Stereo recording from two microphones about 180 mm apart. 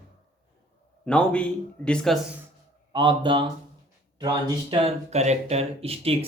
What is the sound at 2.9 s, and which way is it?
Speech, 25° right (ahead or behind).